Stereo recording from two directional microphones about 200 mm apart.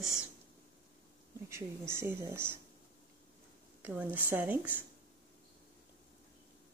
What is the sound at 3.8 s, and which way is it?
A woman's voice, 10° right (ahead or behind).